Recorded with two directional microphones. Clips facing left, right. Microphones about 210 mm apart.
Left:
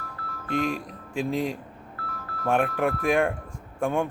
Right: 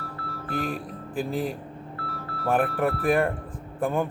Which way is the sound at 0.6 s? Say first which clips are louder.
Left 2 dB; 5° right (ahead or behind).